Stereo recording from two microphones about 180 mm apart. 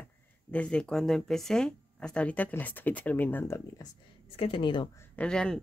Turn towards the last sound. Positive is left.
turn(degrees=5)  # may be behind; listen again after turning